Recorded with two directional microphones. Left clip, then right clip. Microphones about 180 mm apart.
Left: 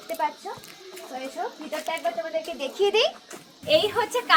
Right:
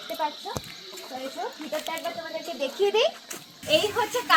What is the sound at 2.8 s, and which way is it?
A woman's voice, 25° left (ahead or behind).